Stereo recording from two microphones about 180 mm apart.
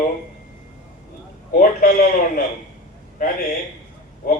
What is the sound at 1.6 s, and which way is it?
Speech, 55° left (ahead or behind).